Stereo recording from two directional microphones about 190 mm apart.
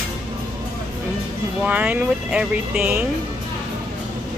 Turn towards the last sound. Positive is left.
turn(degrees=-5)  # may be behind; listen again after turning